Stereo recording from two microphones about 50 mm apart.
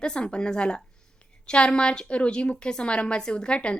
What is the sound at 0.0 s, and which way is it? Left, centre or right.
A woman's voice, centre.